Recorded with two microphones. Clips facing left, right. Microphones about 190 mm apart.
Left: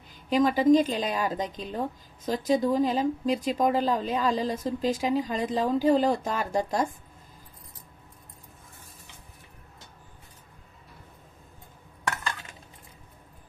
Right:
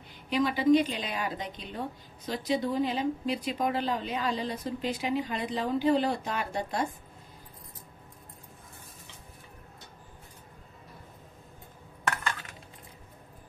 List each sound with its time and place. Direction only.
0.3 s a woman's voice: 40° left (ahead or behind)